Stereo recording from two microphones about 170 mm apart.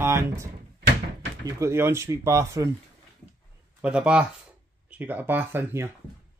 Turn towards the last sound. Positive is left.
turn(degrees=-15)  # may be behind; listen again after turning